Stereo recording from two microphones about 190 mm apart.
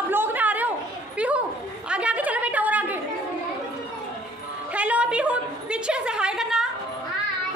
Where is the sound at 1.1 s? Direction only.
5° right (ahead or behind).